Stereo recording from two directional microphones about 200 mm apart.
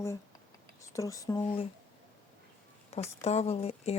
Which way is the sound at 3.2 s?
30° left (ahead or behind).